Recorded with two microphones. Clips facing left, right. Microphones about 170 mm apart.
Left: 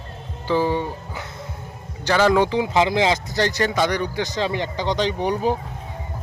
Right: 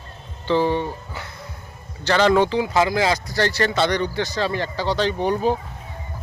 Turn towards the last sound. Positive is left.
turn(degrees=15)  # may be behind; listen again after turning